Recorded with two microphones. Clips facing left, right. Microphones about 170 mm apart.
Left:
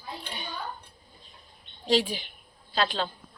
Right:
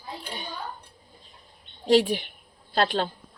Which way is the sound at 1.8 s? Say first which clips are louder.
Right 5 dB; 60° right (ahead or behind).